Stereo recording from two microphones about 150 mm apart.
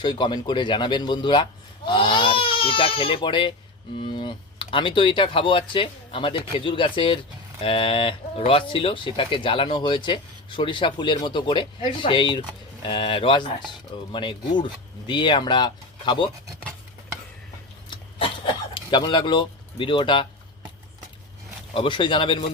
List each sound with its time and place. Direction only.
0.0 s speech: 30° left (ahead or behind)
18.7 s speech: 30° left (ahead or behind)
21.8 s speech: 35° left (ahead or behind)